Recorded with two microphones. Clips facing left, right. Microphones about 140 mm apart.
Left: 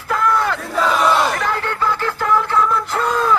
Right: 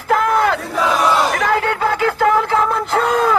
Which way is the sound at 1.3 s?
90° right.